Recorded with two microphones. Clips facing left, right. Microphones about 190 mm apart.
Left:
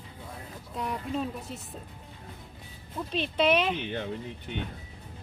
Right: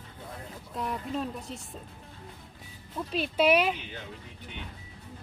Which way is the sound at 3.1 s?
5° right (ahead or behind).